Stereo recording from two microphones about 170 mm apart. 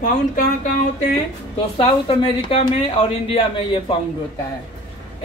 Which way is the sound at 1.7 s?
30° left (ahead or behind).